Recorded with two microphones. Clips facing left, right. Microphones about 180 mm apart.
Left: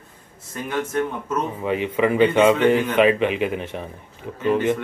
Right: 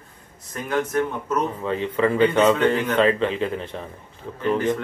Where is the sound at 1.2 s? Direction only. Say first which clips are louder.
Even; 10° left (ahead or behind).